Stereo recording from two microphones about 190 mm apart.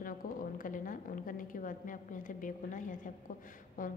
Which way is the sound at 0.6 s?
45° left (ahead or behind).